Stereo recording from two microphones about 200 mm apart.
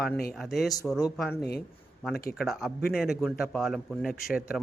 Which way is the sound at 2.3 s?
Centre (ahead or behind).